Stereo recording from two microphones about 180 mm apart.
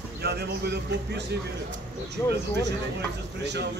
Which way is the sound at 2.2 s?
10° left (ahead or behind).